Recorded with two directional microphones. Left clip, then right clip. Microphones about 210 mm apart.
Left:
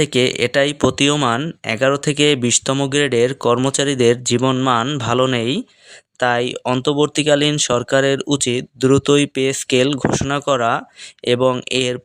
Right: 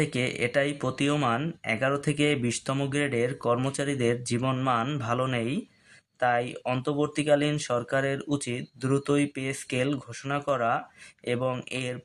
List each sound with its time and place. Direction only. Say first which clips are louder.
0.0 s speech: left 12 dB; 45° left (ahead or behind)